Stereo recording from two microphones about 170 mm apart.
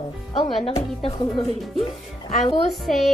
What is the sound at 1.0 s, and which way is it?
Speech, 30° left (ahead or behind).